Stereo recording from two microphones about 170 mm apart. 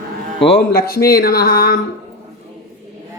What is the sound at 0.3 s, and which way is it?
Speech, 90° left.